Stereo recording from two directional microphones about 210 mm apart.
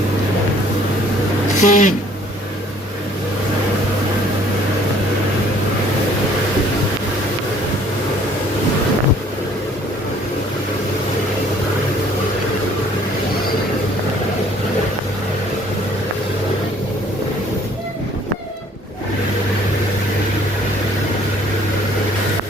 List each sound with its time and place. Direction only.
1.6 s speech: 35° left (ahead or behind)